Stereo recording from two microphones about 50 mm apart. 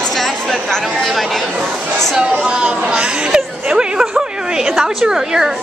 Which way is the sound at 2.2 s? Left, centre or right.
Centre.